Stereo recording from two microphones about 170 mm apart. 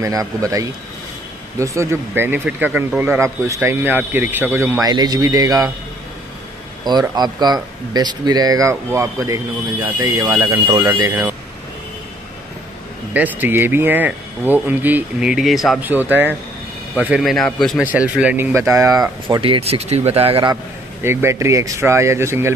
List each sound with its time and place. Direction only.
0.0 s a man's voice: 20° right (ahead or behind)
6.8 s a man's voice: 25° right (ahead or behind)
13.1 s a man's voice: 10° right (ahead or behind); by 20.5 s 35° right (ahead or behind)
21.0 s a man's voice: 15° right (ahead or behind)